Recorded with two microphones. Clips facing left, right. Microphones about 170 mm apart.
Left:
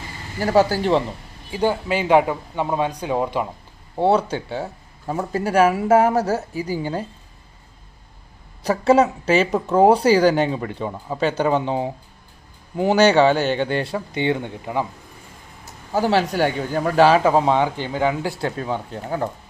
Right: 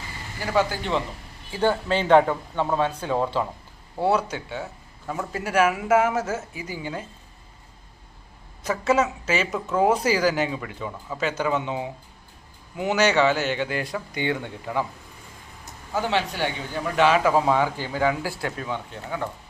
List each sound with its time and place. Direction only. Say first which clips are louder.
0.3 s a man's voice: left 6 dB; 40° left (ahead or behind)
1.5 s speech: left 2 dB; 15° left (ahead or behind)
3.9 s a man's voice: left 5 dB; 25° left (ahead or behind)
8.6 s a man's voice: left 6 dB; 35° left (ahead or behind)
15.9 s a man's voice: left 6 dB; 40° left (ahead or behind)